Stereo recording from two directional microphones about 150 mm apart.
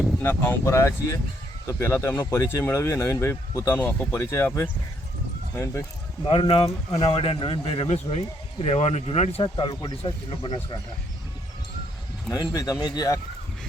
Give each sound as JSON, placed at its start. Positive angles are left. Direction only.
{"t": 0.2, "sound": "speech", "side_deg": 15}
{"t": 6.2, "sound": "speech", "side_deg": 40}
{"t": 6.9, "sound": "speech", "side_deg": 25}
{"t": 7.2, "sound": "speech", "side_deg": 35}
{"t": 9.4, "sound": "speech", "side_deg": 30}
{"t": 12.3, "sound": "speech", "side_deg": 20}